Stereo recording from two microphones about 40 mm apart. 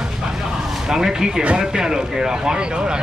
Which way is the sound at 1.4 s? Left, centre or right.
Right.